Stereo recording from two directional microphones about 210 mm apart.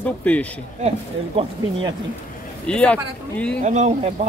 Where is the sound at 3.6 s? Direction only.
35° right (ahead or behind).